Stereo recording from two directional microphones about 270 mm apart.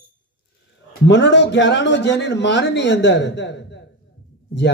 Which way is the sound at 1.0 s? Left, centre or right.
Left.